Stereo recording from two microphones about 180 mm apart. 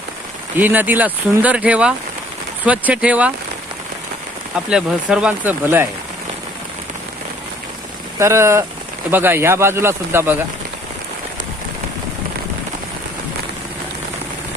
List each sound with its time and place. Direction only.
0.5 s speech: 10° right (ahead or behind)
4.7 s speech: 5° right (ahead or behind)
8.2 s speech: 15° right (ahead or behind)